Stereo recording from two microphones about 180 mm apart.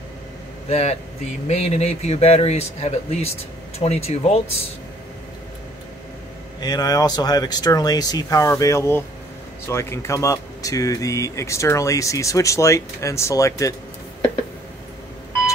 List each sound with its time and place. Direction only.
0.7 s speech: 35° left (ahead or behind)
6.6 s speech: 20° left (ahead or behind)